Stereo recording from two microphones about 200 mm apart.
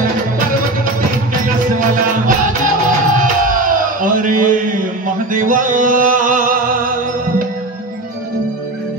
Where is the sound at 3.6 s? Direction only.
45° right (ahead or behind).